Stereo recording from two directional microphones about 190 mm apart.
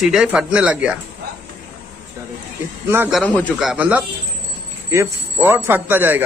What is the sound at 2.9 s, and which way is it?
Speech, 10° right (ahead or behind).